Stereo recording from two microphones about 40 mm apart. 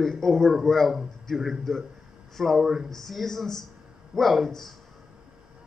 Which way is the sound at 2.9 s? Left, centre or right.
Centre.